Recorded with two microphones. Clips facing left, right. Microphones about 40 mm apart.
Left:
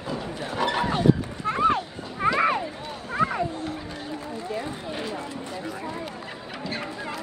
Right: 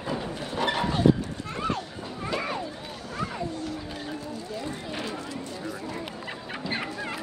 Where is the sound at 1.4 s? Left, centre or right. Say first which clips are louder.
Left 10 dB; left.